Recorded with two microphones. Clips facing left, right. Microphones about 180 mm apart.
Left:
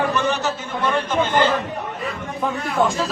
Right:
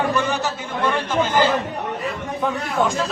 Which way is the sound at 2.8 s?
Centre (ahead or behind).